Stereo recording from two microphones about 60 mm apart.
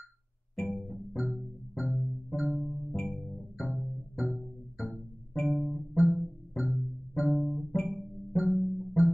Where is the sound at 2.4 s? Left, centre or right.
Centre.